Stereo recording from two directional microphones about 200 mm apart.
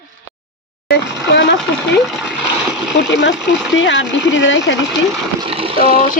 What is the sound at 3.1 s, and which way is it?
Speech, 65° left (ahead or behind).